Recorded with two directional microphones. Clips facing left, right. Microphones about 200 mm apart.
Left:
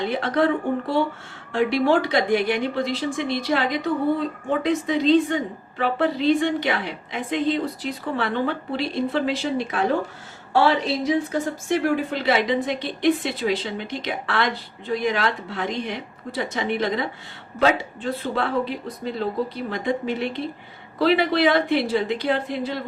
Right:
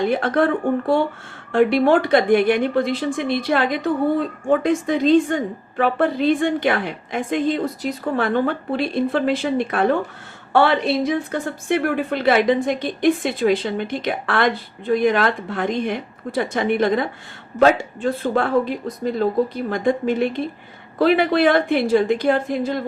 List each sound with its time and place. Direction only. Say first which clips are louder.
0.0 s a woman's voice: right 3 dB; 50° right (ahead or behind)